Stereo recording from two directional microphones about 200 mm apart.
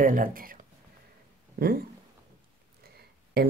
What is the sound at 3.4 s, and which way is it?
Speech, 50° right (ahead or behind).